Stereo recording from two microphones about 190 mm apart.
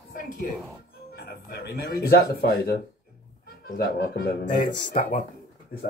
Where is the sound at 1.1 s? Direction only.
50° left (ahead or behind).